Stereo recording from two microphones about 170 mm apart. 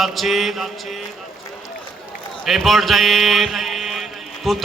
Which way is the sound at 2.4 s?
Centre (ahead or behind).